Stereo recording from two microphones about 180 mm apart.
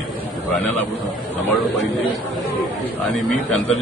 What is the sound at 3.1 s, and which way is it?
Mantra, centre (ahead or behind).